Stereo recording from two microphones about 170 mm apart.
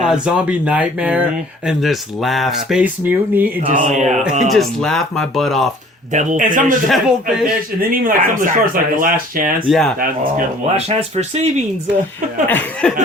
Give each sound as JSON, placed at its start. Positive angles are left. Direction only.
{"t": 0.0, "sound": "speech", "side_deg": -5}
{"t": 3.7, "sound": "speech", "side_deg": -45}
{"t": 4.4, "sound": "speech", "side_deg": 0}
{"t": 6.1, "sound": "speech", "side_deg": -45}
{"t": 6.8, "sound": "speech", "side_deg": 0}
{"t": 7.9, "sound": "speech", "side_deg": -55}
{"t": 9.6, "sound": "speech", "side_deg": 0}
{"t": 10.8, "sound": "speech", "side_deg": -40}
{"t": 12.5, "sound": "a sound", "side_deg": 10}